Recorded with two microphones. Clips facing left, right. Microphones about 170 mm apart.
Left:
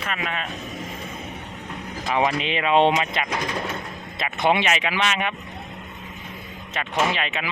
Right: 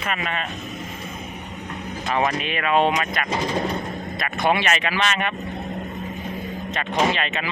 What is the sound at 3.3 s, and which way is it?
Speech, 35° right (ahead or behind).